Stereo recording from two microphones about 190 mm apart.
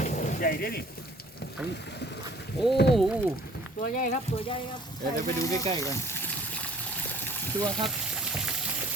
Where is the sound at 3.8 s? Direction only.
45° left (ahead or behind).